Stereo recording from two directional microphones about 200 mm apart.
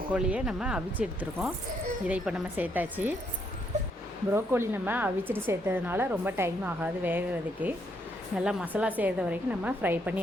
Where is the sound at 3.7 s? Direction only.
35° right (ahead or behind).